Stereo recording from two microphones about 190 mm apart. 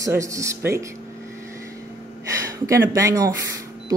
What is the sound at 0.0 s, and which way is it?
Speech, 15° right (ahead or behind).